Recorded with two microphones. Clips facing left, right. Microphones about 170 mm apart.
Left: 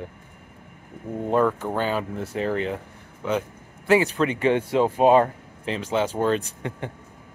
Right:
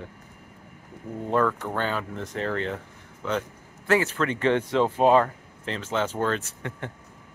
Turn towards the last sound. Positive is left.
turn(degrees=15)  # may be behind; listen again after turning